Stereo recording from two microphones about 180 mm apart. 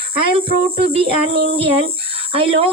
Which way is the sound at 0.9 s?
30° right (ahead or behind).